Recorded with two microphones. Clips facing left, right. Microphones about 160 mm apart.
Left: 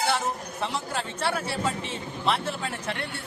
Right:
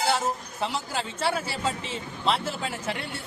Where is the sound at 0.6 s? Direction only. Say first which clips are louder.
Right 1 dB; centre (ahead or behind).